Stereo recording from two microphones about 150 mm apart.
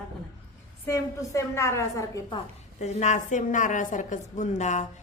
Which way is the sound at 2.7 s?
50° left (ahead or behind).